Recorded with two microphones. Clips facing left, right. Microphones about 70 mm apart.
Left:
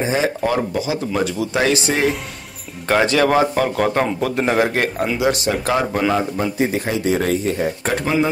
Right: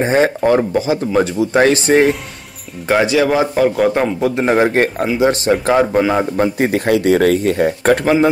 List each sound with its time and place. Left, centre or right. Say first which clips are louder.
0.0 s speech: right 6 dB; right
0.4 s speech: right 6 dB; right
2.9 s a man's voice: right 2 dB; centre
4.2 s a man's voice: right 6 dB; centre
5.7 s a man's voice: right 4 dB; centre
6.6 s speech: right 4 dB; right
8.0 s speech: right 2 dB; right